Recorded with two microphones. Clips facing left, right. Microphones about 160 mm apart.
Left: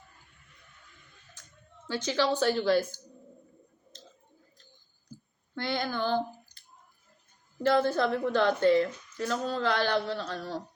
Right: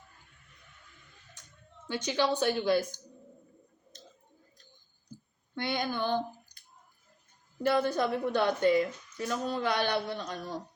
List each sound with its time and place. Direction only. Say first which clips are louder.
1.9 s a woman's voice: left 1 dB; 15° right (ahead or behind)
5.5 s speech: left 1 dB; 15° right (ahead or behind)
7.6 s a woman's voice: left 2 dB; 15° right (ahead or behind)